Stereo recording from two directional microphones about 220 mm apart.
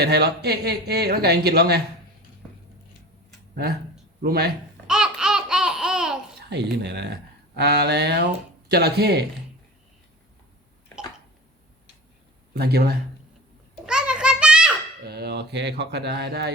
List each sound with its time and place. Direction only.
0.0 s speech: 45° right (ahead or behind)
4.2 s speech: 45° right (ahead or behind)
4.9 s laughter: 5° right (ahead or behind)
6.8 s speech: 50° right (ahead or behind)
12.5 s speech: 45° right (ahead or behind)
13.8 s a sound: 5° right (ahead or behind)
15.0 s speech: 45° right (ahead or behind)